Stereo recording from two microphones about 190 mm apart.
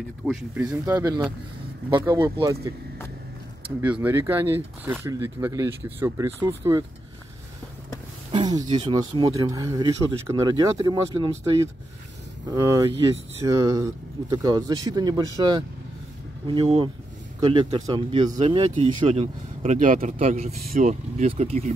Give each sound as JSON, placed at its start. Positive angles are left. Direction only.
{"t": 0.2, "sound": "speech", "side_deg": -5}
{"t": 0.9, "sound": "speech", "side_deg": -20}
{"t": 3.8, "sound": "speech", "side_deg": -10}
{"t": 8.3, "sound": "a sound", "side_deg": -20}
{"t": 8.6, "sound": "speech", "side_deg": -30}